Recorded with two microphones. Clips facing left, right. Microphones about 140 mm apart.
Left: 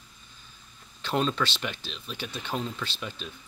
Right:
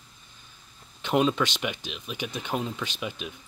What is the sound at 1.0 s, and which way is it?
Speech, 15° right (ahead or behind).